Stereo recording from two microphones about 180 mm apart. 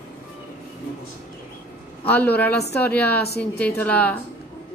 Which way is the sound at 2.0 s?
10° left (ahead or behind).